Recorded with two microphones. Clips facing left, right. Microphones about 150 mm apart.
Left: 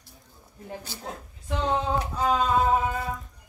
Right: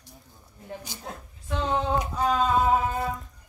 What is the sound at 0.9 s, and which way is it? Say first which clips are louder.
Speech: left 2 dB; 15° right (ahead or behind).